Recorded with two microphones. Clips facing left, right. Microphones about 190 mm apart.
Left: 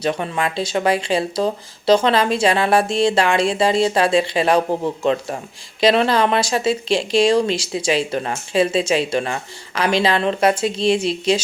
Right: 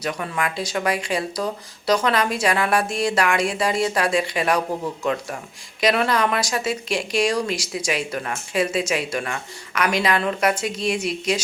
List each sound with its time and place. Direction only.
0.0 s speech: 30° left (ahead or behind)